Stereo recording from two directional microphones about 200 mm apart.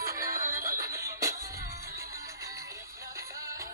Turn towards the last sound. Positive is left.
turn(degrees=-15)  # may be behind; listen again after turning